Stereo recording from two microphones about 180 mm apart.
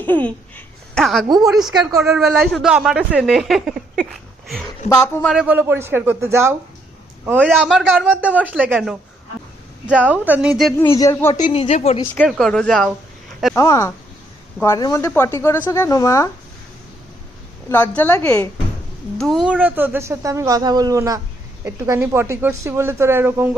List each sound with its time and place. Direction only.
0.5 s a sound: centre (ahead or behind)
1.5 s speech: centre (ahead or behind)
3.9 s a sound: centre (ahead or behind)
4.9 s a woman's voice: 10° left (ahead or behind)
5.3 s a man's voice: 5° right (ahead or behind)
7.4 s a man's voice: centre (ahead or behind)
10.8 s a woman's voice: 15° left (ahead or behind)
11.4 s a woman's voice: 30° left (ahead or behind)
12.1 s speech: 5° left (ahead or behind)
13.6 s a woman's voice: 20° left (ahead or behind)
17.7 s a woman's voice: 10° left (ahead or behind); by 23.6 s 15° right (ahead or behind)